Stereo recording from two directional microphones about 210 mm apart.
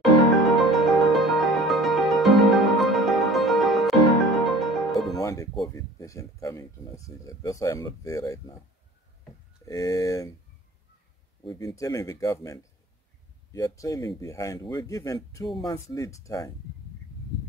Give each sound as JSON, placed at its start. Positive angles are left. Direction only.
{"t": 0.0, "sound": "music", "side_deg": 0}
{"t": 5.2, "sound": "music", "side_deg": 15}
{"t": 5.7, "sound": "speech", "side_deg": 15}
{"t": 9.7, "sound": "speech", "side_deg": 15}
{"t": 11.4, "sound": "speech", "side_deg": 15}